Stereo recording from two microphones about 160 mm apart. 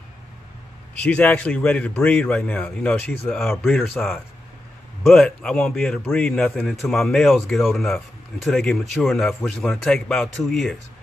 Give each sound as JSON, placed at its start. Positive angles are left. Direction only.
{"t": 1.0, "sound": "a man's voice", "side_deg": 10}